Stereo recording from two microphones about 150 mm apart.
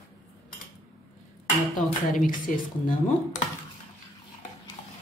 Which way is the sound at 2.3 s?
65° left (ahead or behind).